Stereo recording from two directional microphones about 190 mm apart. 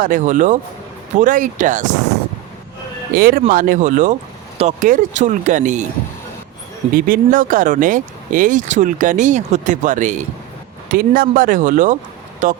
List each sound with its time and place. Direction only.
0.0 s speech: 40° right (ahead or behind)
3.2 s speech: 50° right (ahead or behind)
6.9 s speech: 45° right (ahead or behind)